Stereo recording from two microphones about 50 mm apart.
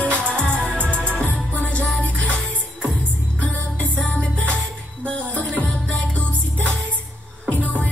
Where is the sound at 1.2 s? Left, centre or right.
Left.